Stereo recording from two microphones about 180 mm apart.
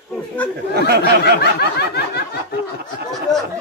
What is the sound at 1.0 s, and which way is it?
Snicker, 65° left (ahead or behind).